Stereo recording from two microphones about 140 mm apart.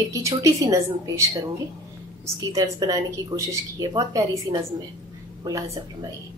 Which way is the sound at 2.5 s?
25° right (ahead or behind).